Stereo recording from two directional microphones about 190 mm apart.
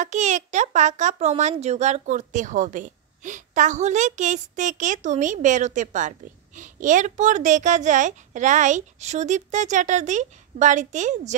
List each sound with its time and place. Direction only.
0.0 s a child's voice: 40° right (ahead or behind)